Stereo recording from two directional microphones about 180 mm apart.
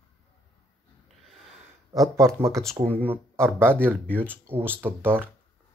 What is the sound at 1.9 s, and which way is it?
Speech, 20° right (ahead or behind).